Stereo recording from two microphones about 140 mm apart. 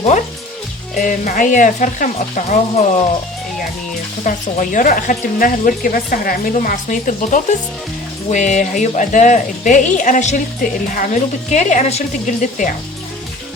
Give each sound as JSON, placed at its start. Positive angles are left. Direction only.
{"t": 0.9, "sound": "speech", "side_deg": 65}
{"t": 4.2, "sound": "speech", "side_deg": 65}
{"t": 6.5, "sound": "speech", "side_deg": 70}